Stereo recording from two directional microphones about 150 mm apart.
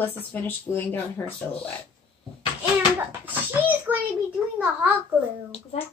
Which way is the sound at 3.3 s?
15° right (ahead or behind).